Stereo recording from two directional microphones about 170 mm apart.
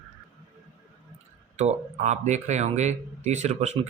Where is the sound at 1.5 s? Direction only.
45° right (ahead or behind).